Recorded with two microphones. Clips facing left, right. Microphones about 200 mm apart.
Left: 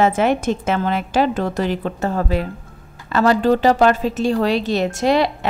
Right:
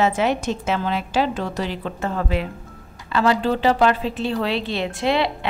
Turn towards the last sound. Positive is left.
turn(degrees=45)  # may be behind; listen again after turning